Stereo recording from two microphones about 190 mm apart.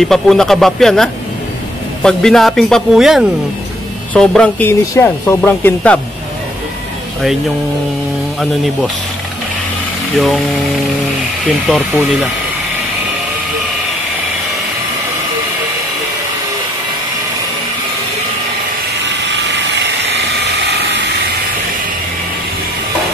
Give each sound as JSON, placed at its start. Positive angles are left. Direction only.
{"t": 0.0, "sound": "speech", "side_deg": 0}
{"t": 10.1, "sound": "speech", "side_deg": 0}
{"t": 11.7, "sound": "speech", "side_deg": 0}
{"t": 20.4, "sound": "a sound", "side_deg": -65}